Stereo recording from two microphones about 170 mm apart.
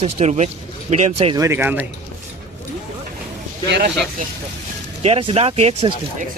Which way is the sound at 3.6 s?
80° right.